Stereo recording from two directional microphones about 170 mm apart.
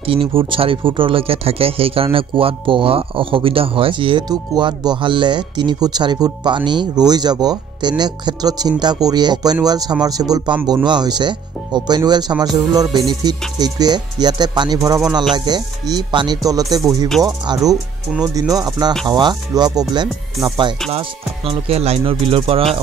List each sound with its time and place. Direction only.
0.0 s speech: 35° right (ahead or behind)
21.5 s speech: 35° right (ahead or behind)